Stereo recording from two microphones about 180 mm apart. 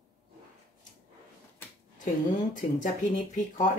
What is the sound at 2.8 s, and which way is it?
Speech, 45° left (ahead or behind).